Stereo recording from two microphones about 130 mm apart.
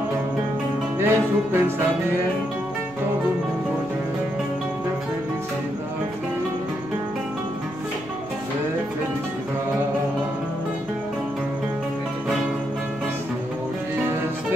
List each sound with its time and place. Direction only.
0.9 s music: 20° right (ahead or behind)